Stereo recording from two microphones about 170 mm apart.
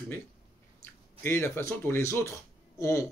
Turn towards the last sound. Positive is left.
turn(degrees=15)  # may be behind; listen again after turning